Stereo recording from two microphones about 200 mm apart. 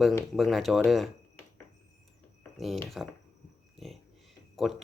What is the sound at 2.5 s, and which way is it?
Speech, centre (ahead or behind).